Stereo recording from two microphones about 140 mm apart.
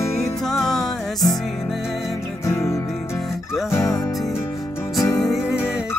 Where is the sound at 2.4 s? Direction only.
20° left (ahead or behind).